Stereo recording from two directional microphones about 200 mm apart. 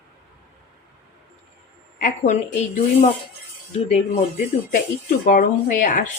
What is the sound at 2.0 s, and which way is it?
Speech, 40° left (ahead or behind).